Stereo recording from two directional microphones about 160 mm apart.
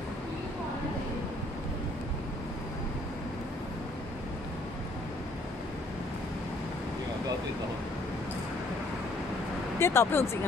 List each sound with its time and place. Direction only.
9.8 s speech: 15° left (ahead or behind)